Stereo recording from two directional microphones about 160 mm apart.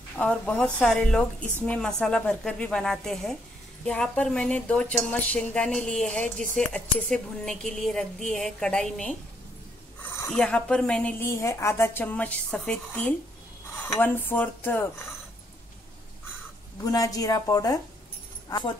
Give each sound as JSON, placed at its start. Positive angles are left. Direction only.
{"t": 0.2, "sound": "a woman's voice", "side_deg": 5}
{"t": 10.3, "sound": "a woman's voice", "side_deg": 5}
{"t": 16.8, "sound": "a woman's voice", "side_deg": 20}